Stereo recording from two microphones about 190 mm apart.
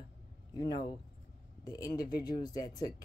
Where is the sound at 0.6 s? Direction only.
20° left (ahead or behind).